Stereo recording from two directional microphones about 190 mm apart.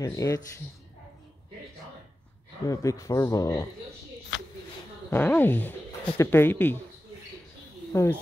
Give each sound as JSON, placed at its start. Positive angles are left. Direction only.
{"t": 0.0, "sound": "speech", "side_deg": 15}
{"t": 2.6, "sound": "speech", "side_deg": 15}
{"t": 5.1, "sound": "speech", "side_deg": 10}
{"t": 7.9, "sound": "speech", "side_deg": 15}